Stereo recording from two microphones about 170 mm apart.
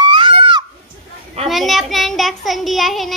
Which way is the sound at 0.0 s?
30° right (ahead or behind).